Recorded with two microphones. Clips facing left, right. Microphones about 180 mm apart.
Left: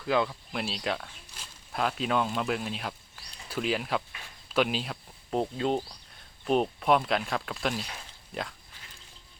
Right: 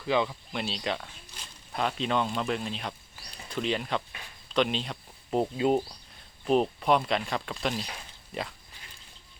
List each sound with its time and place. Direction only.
0.0 s speech: centre (ahead or behind)